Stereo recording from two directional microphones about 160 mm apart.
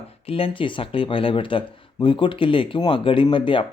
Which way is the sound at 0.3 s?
35° left (ahead or behind).